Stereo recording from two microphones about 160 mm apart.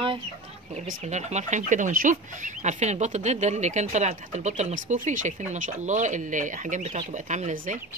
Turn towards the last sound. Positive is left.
turn(degrees=-50)  # may be behind; listen again after turning